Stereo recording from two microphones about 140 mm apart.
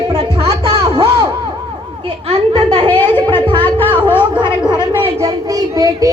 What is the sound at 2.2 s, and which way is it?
Speech, 45° right (ahead or behind).